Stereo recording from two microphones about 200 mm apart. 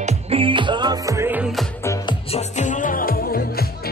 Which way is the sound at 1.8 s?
20° left (ahead or behind).